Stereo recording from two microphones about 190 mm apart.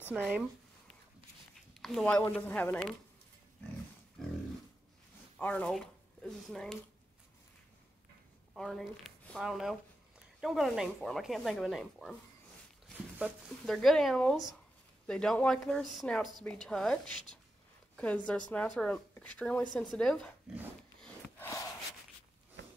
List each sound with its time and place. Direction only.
0.1 s speech: 5° right (ahead or behind)
1.7 s speech: centre (ahead or behind)
4.2 s wild animals: 5° left (ahead or behind)
5.4 s speech: 5° left (ahead or behind)
8.5 s speech: centre (ahead or behind)
13.2 s speech: centre (ahead or behind)
22.6 s a sound: 70° right (ahead or behind)